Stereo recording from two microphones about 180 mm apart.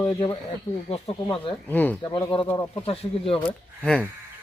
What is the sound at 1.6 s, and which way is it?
Speech, 10° left (ahead or behind).